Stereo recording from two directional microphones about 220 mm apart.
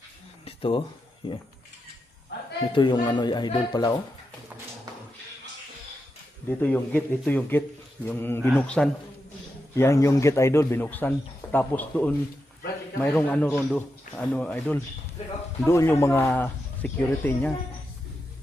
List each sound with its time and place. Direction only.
0.4 s a sound: 25° left (ahead or behind)
2.7 s speech: 20° left (ahead or behind)
6.5 s a man's voice: 10° left (ahead or behind)